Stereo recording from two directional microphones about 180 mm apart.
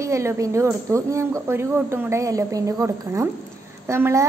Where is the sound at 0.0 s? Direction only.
15° right (ahead or behind).